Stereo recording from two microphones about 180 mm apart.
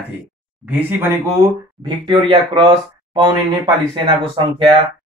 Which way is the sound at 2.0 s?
30° right (ahead or behind).